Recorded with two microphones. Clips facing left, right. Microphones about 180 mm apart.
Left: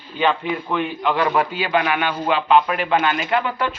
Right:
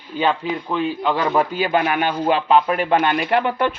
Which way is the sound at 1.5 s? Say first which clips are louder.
Right 1 dB; 45° right (ahead or behind).